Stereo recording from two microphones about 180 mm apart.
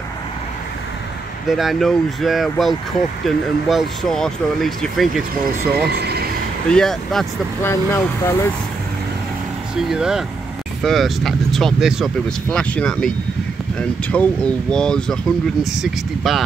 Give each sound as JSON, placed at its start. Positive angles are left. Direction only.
{"t": 1.5, "sound": "speech", "side_deg": 0}
{"t": 5.9, "sound": "speech", "side_deg": -60}
{"t": 6.7, "sound": "speech", "side_deg": 0}
{"t": 7.6, "sound": "speech", "side_deg": 15}
{"t": 9.8, "sound": "speech", "side_deg": -5}